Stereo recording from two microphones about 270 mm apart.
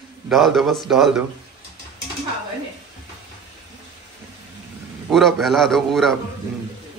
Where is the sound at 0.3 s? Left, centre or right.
Centre.